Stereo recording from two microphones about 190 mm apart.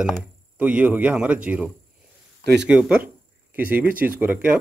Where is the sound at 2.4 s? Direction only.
60° right (ahead or behind).